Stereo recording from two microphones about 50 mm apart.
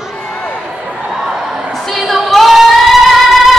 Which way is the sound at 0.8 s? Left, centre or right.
Right.